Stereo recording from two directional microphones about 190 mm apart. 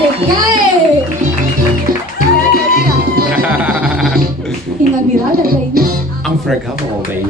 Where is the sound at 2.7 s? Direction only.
50° right (ahead or behind).